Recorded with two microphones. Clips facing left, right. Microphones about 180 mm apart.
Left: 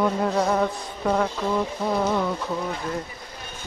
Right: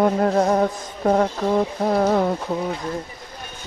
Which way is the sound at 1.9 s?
50° right (ahead or behind).